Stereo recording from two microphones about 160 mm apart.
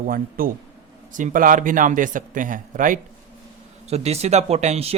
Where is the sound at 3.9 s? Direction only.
40° right (ahead or behind).